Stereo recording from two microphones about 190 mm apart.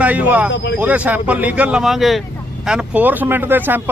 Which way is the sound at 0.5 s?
65° left (ahead or behind).